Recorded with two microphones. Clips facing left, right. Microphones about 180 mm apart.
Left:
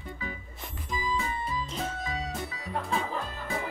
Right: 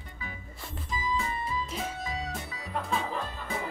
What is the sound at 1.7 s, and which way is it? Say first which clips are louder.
Music: left 1 dB; centre (ahead or behind).